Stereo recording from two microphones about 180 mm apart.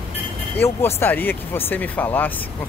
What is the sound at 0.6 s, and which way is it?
Speech, 15° left (ahead or behind).